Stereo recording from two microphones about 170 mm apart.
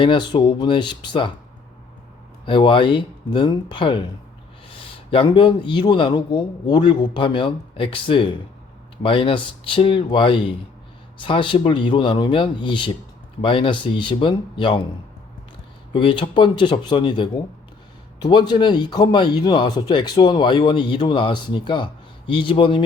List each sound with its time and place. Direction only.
0.0 s speech: 30° left (ahead or behind)
2.5 s speech: 30° left (ahead or behind)
5.1 s speech: 30° left (ahead or behind)
15.9 s speech: 30° left (ahead or behind)